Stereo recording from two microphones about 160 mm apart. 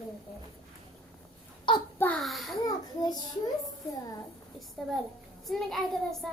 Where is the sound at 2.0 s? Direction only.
5° left (ahead or behind).